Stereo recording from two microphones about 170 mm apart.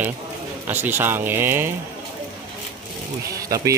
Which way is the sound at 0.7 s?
10° right (ahead or behind).